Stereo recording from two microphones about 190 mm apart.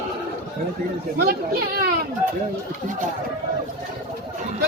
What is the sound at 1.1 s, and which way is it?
Speech, 55° right (ahead or behind).